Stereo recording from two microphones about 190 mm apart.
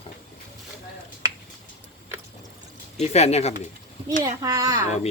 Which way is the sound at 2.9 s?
35° left (ahead or behind).